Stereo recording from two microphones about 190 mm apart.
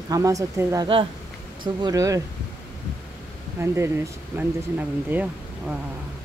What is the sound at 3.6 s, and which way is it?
Speech, 15° right (ahead or behind).